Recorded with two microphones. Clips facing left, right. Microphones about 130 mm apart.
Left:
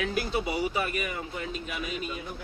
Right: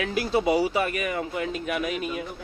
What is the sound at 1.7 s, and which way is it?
Speech, 70° right (ahead or behind).